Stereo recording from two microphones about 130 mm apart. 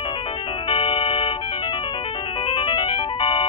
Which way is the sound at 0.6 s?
40° left (ahead or behind).